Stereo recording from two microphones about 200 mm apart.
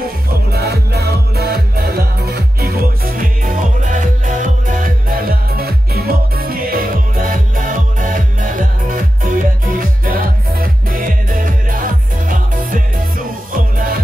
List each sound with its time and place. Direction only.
0.5 s music: 55° right (ahead or behind)